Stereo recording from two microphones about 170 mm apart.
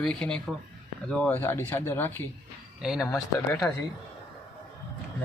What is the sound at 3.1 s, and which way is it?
Speech, 20° left (ahead or behind).